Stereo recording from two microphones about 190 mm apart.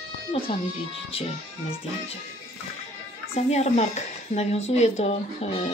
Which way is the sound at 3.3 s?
35° left (ahead or behind).